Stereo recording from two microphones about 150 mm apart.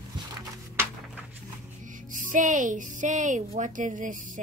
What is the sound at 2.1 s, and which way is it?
Child singing, 60° right (ahead or behind).